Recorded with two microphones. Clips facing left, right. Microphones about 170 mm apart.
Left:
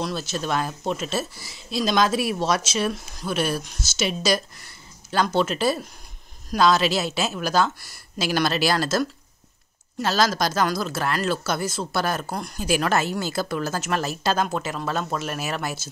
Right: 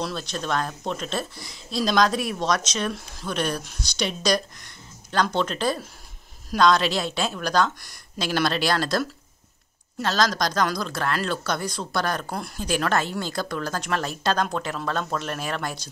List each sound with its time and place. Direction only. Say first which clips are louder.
0.0 s speech: left 2 dB; 5° left (ahead or behind)